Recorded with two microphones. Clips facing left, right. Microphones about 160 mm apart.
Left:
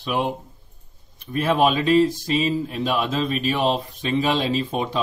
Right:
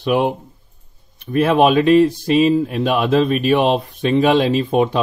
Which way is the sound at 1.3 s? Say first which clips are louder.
Right 6 dB; 60° right (ahead or behind).